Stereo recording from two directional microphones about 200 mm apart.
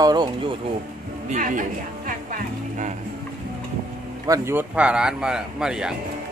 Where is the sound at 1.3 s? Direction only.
40° right (ahead or behind).